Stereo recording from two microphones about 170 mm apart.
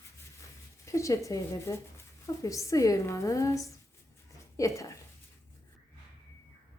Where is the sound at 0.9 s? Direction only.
20° left (ahead or behind).